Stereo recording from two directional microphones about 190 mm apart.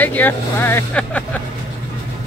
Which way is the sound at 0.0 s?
10° left (ahead or behind).